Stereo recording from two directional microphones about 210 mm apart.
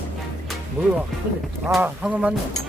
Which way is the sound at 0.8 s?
10° right (ahead or behind).